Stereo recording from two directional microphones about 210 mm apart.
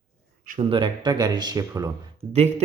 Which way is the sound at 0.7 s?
25° right (ahead or behind).